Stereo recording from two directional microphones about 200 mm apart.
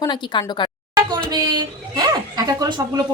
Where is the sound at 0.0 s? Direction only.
20° left (ahead or behind).